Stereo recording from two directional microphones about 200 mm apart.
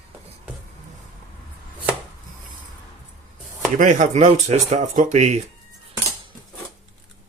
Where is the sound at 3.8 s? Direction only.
40° right (ahead or behind).